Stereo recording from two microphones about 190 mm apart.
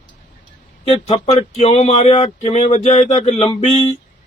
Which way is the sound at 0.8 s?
35° left (ahead or behind).